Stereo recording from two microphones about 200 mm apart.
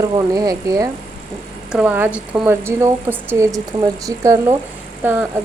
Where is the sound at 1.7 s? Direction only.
5° right (ahead or behind).